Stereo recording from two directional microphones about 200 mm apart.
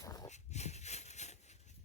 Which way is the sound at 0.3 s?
35° left (ahead or behind).